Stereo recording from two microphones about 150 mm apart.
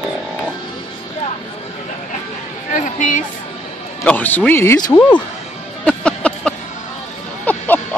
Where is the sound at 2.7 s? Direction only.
55° left (ahead or behind).